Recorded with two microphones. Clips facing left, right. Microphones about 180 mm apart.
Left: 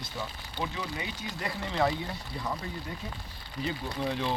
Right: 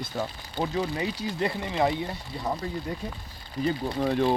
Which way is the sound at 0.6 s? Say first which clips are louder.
Right 8 dB; 35° right (ahead or behind).